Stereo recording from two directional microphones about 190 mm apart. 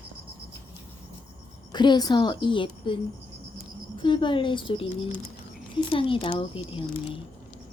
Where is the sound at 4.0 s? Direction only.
25° left (ahead or behind).